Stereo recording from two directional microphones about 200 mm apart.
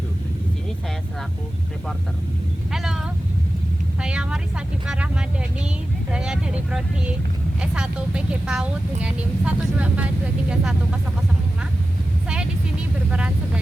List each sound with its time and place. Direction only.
2.7 s a sound: centre (ahead or behind)
4.0 s vehicle: 5° right (ahead or behind)
6.1 s speech: 5° right (ahead or behind)
13.1 s speech: 5° right (ahead or behind)